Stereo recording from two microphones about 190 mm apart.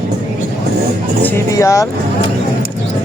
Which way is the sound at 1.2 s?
15° left (ahead or behind).